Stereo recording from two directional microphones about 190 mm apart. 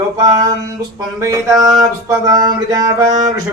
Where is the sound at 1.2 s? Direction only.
20° right (ahead or behind).